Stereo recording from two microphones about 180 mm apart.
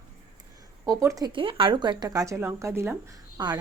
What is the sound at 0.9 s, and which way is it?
Speech, 20° right (ahead or behind).